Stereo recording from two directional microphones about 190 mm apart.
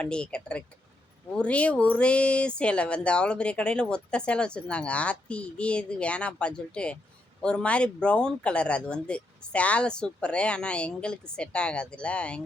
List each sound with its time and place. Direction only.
0.0 s speech: 5° left (ahead or behind)